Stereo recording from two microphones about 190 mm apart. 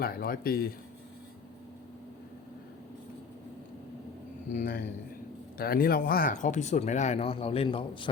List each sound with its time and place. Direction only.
0.0 s a man's voice: 55° left (ahead or behind)
4.5 s a man's voice: 50° left (ahead or behind); by 8.1 s 25° left (ahead or behind)